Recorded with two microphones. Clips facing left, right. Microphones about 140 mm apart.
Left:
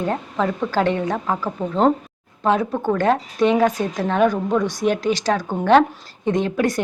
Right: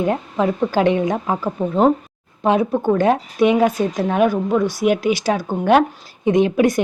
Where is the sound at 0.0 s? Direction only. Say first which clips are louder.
Right 3 dB; 15° right (ahead or behind).